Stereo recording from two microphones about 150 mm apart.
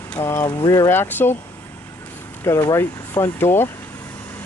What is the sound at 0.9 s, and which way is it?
Speech, 15° left (ahead or behind).